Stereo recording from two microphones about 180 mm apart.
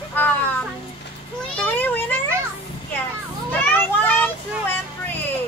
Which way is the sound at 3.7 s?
10° left (ahead or behind).